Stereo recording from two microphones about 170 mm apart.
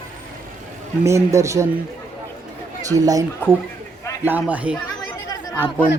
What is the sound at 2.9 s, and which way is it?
Speech, 20° right (ahead or behind).